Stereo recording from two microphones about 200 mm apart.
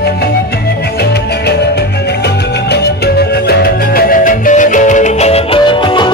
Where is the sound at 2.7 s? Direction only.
55° left (ahead or behind).